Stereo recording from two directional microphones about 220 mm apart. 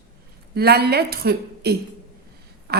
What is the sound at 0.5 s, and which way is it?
A woman's voice, 45° right (ahead or behind).